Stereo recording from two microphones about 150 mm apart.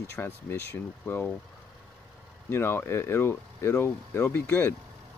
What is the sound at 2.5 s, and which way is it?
Speech, 15° left (ahead or behind).